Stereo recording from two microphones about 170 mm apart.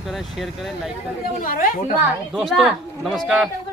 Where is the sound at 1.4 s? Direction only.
55° left (ahead or behind).